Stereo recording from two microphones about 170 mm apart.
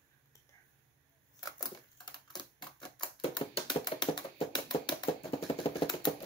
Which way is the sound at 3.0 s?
30° left (ahead or behind).